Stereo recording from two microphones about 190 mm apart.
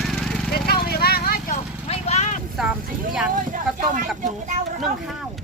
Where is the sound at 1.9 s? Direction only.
35° left (ahead or behind).